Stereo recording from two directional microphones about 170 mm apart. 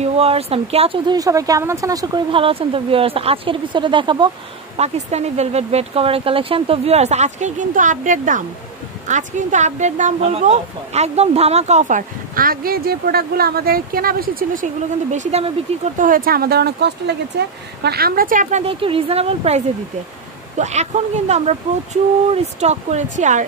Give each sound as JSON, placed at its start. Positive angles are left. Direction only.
{"t": 0.0, "sound": "speech", "side_deg": -35}
{"t": 1.1, "sound": "speech", "side_deg": -20}
{"t": 4.7, "sound": "speech", "side_deg": -40}
{"t": 15.1, "sound": "speech", "side_deg": -40}
{"t": 18.7, "sound": "speech", "side_deg": -30}